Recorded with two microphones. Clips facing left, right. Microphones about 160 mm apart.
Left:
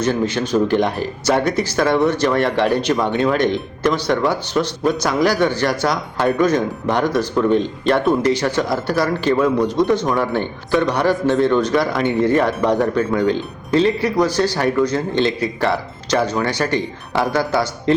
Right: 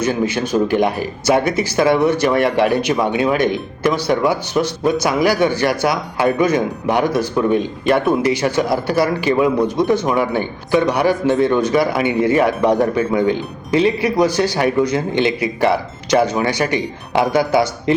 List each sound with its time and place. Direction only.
0.0 s speech: 10° right (ahead or behind)